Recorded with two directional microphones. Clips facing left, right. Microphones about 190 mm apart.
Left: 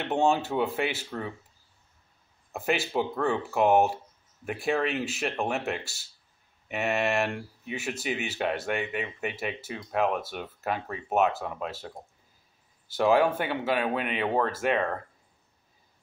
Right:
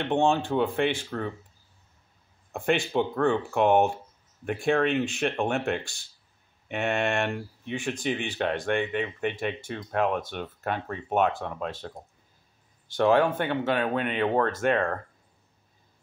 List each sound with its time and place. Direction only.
0.0 s speech: 5° left (ahead or behind)
2.5 s speech: 5° left (ahead or behind)